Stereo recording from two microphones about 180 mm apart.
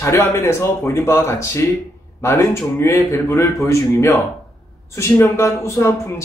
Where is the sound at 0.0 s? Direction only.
15° left (ahead or behind).